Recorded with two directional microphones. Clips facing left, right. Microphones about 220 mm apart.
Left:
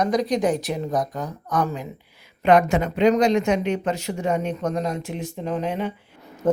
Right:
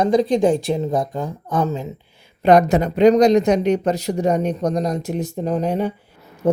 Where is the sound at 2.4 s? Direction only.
40° right (ahead or behind).